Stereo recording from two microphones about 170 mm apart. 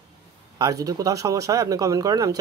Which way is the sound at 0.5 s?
20° right (ahead or behind).